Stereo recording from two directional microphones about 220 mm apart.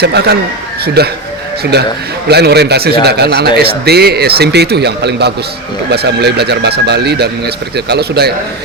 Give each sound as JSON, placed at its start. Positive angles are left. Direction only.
{"t": 0.0, "sound": "a man's voice", "side_deg": -50}